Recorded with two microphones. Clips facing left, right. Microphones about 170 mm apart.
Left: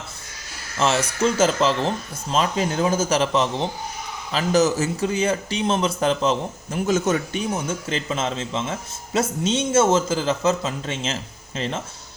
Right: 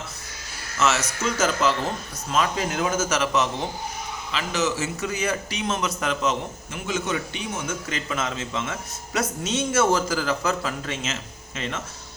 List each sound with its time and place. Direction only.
0.8 s a man's voice: 30° left (ahead or behind)
7.7 s speech: 30° left (ahead or behind)